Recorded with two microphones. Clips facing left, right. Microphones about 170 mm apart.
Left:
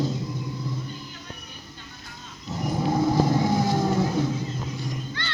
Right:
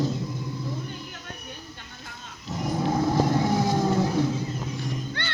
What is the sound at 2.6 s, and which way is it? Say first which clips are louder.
Vehicle: left 1 dB; 5° left (ahead or behind).